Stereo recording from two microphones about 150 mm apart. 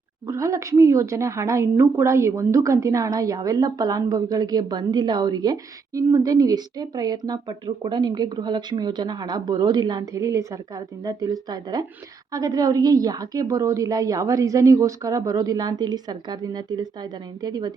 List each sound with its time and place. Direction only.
0.3 s a woman's voice: 20° right (ahead or behind)